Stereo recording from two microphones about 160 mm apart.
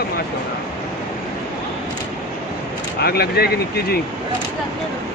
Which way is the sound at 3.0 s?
80° left.